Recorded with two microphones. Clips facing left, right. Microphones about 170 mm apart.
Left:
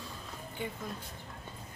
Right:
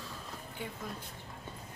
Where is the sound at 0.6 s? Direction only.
5° right (ahead or behind).